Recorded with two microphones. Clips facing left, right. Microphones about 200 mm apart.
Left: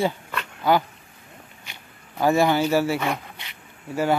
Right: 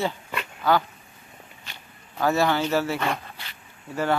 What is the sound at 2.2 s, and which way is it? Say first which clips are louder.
Speech: left 3 dB; 15° left (ahead or behind).